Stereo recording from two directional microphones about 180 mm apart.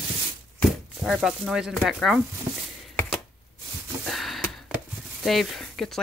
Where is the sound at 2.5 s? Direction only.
20° right (ahead or behind).